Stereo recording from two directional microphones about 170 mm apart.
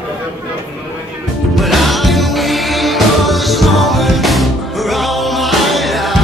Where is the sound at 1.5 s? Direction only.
Centre (ahead or behind).